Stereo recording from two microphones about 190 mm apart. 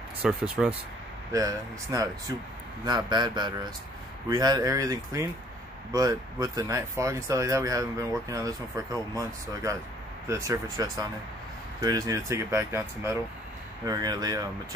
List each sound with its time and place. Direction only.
0.2 s speech: 5° right (ahead or behind)
1.3 s speech: 20° right (ahead or behind)